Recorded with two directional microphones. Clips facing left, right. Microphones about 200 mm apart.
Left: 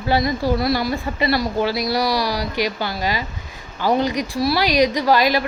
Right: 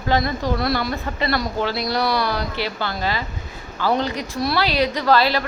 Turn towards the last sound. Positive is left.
turn(degrees=15)  # may be behind; listen again after turning